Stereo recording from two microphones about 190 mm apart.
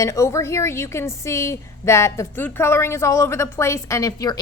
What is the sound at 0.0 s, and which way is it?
A woman's voice, 15° left (ahead or behind).